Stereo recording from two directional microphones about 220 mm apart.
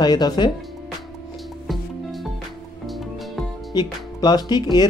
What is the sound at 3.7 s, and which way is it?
Speech, 20° left (ahead or behind).